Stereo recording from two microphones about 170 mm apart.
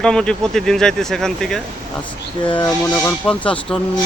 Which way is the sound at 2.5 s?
25° left (ahead or behind).